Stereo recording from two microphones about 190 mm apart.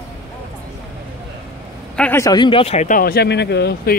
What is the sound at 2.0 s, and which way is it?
Speech, 15° left (ahead or behind).